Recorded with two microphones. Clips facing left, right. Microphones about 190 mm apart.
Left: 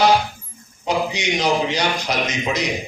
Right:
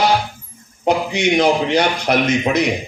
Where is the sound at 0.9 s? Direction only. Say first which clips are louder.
Right 5 dB; 55° right (ahead or behind).